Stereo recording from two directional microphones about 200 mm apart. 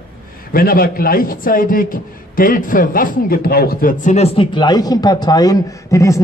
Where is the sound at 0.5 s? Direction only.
50° left (ahead or behind).